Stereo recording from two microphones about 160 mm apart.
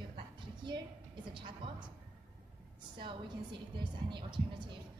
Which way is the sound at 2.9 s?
30° right (ahead or behind).